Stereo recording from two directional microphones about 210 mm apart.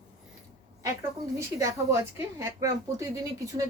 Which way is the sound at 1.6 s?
15° right (ahead or behind).